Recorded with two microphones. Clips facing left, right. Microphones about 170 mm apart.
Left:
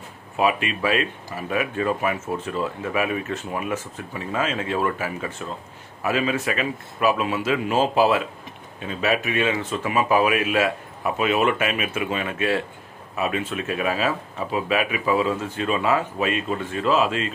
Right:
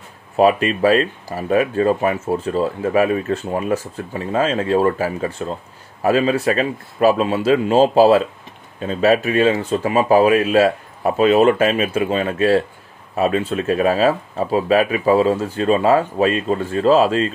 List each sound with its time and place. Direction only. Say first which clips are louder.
0.4 s speech: right 8 dB; 40° right (ahead or behind)